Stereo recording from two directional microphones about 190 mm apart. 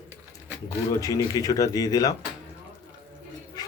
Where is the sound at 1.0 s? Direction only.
20° left (ahead or behind).